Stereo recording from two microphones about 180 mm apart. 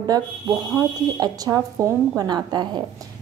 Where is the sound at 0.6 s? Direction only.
Centre (ahead or behind).